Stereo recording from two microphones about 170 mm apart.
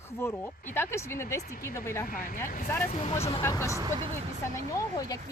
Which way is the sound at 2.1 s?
55° left (ahead or behind).